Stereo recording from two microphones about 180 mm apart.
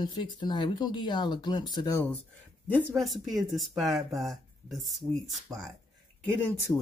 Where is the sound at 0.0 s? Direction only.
25° left (ahead or behind).